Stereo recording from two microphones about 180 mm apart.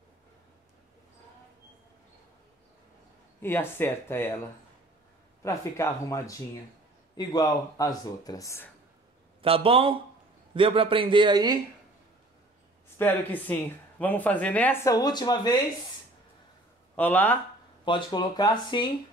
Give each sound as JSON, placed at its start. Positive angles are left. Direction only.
{"t": 3.4, "sound": "speech", "side_deg": 10}
{"t": 5.4, "sound": "speech", "side_deg": 15}
{"t": 9.4, "sound": "speech", "side_deg": -30}
{"t": 12.9, "sound": "speech", "side_deg": 10}
{"t": 16.9, "sound": "speech", "side_deg": 10}
{"t": 17.8, "sound": "speech", "side_deg": 25}